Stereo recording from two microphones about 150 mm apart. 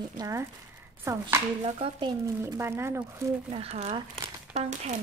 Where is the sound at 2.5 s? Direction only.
15° right (ahead or behind).